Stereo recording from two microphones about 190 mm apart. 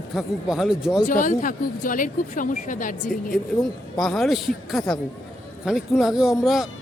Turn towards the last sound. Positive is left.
turn(degrees=0)  # may be behind; listen again after turning